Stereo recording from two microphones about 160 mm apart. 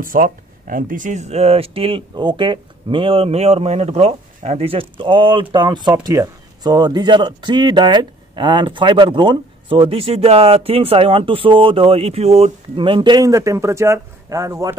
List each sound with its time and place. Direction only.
0.0 s speech: 60° right (ahead or behind); by 14.8 s 20° right (ahead or behind)